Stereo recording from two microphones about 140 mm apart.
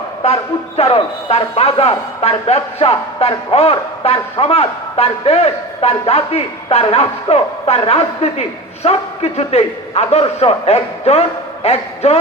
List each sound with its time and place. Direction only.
0.8 s speech: 45° left (ahead or behind)